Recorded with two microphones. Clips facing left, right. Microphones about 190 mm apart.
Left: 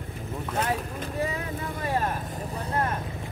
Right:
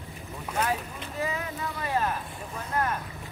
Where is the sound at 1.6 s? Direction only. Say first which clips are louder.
Left 1 dB; 50° left (ahead or behind); by 2.9 s 35° left (ahead or behind).